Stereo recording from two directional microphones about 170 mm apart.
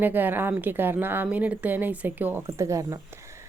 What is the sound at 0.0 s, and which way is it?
A woman's voice, 10° right (ahead or behind).